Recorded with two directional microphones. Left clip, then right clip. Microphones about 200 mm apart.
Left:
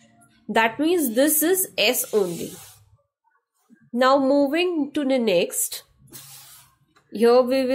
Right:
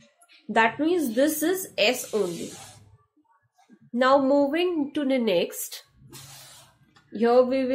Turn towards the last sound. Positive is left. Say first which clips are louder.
# left 3 dB
turn(degrees=30)  # may be behind; listen again after turning